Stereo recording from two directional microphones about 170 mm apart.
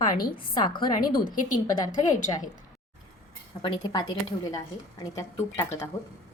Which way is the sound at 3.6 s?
25° left (ahead or behind).